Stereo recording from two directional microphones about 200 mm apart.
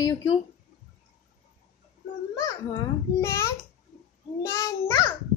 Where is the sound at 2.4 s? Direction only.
15° left (ahead or behind).